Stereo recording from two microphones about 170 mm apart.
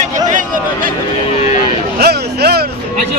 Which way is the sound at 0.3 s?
50° right (ahead or behind).